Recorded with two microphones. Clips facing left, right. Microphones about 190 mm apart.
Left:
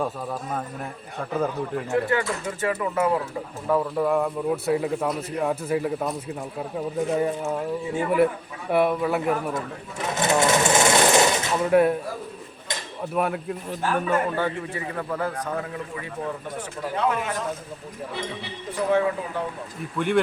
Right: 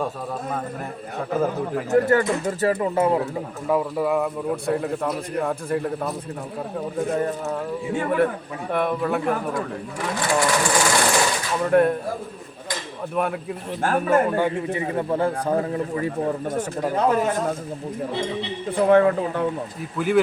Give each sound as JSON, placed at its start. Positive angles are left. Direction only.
{"t": 1.9, "sound": "a man's voice", "side_deg": -40}
{"t": 3.7, "sound": "a man's voice", "side_deg": -5}
{"t": 7.2, "sound": "a man's voice", "side_deg": 10}
{"t": 8.7, "sound": "a man's voice", "side_deg": 10}
{"t": 9.6, "sound": "sewing machine", "side_deg": 20}
{"t": 11.6, "sound": "a man's voice", "side_deg": 5}
{"t": 13.1, "sound": "a man's voice", "side_deg": 0}
{"t": 13.8, "sound": "speech", "side_deg": -50}
{"t": 14.3, "sound": "a man's voice", "side_deg": -15}
{"t": 18.1, "sound": "speech", "side_deg": -25}
{"t": 18.9, "sound": "speech", "side_deg": -60}
{"t": 20.0, "sound": "a man's voice", "side_deg": -5}